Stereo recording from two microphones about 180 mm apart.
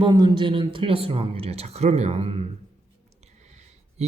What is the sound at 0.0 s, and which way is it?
Speech, 25° right (ahead or behind).